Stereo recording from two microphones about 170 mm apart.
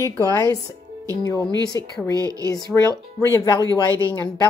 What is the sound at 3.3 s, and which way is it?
Speech, 25° left (ahead or behind).